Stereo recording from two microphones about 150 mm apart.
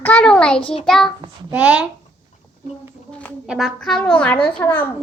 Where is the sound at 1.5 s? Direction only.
10° right (ahead or behind).